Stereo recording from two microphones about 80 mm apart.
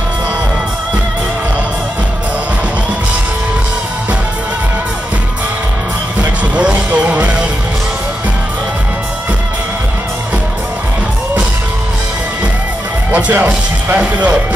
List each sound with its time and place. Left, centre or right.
6.5 s music: centre
13.1 s speech: centre